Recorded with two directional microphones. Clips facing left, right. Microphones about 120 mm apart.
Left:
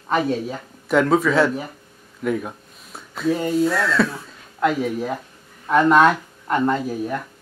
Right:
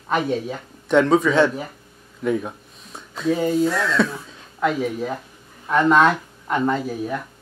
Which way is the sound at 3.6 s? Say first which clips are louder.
Left 1 dB; centre (ahead or behind).